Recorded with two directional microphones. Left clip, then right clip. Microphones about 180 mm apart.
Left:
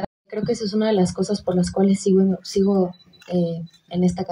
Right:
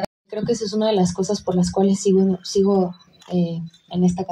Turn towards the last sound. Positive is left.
turn(degrees=25)  # may be behind; listen again after turning